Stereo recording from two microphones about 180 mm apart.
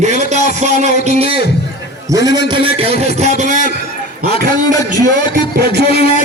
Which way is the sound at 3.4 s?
45° right (ahead or behind).